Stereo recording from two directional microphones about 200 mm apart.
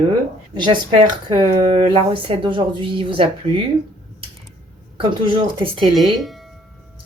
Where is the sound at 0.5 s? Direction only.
25° right (ahead or behind).